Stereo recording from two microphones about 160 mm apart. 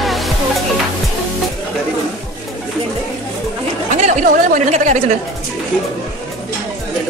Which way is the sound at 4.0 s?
50° right (ahead or behind).